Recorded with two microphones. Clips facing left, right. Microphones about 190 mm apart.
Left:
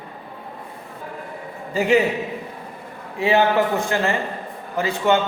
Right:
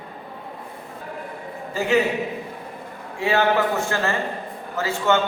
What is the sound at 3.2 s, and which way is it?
A man's voice, 20° left (ahead or behind).